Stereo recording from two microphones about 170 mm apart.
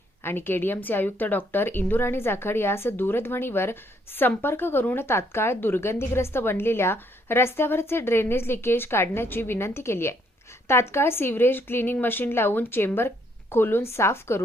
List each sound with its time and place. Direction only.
0.2 s speech: 15° left (ahead or behind)